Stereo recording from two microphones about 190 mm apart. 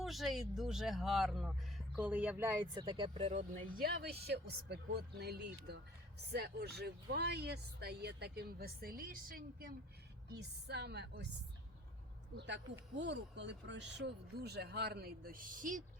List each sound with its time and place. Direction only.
0.0 s speech: centre (ahead or behind); by 3.3 s 25° right (ahead or behind)
3.8 s speech: 55° right (ahead or behind)
13.0 s speech: 70° right (ahead or behind); by 15.8 s 45° right (ahead or behind)